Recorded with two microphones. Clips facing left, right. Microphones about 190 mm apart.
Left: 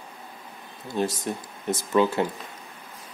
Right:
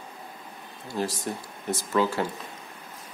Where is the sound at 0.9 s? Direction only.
20° left (ahead or behind).